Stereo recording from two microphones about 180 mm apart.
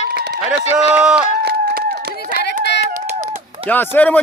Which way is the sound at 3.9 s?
10° left (ahead or behind).